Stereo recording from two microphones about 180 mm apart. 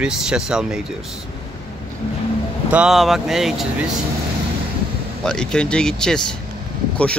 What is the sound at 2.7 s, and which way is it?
Speech, 5° right (ahead or behind).